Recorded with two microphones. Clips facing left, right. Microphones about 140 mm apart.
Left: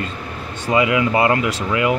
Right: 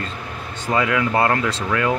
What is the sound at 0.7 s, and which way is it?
Speech, 15° left (ahead or behind).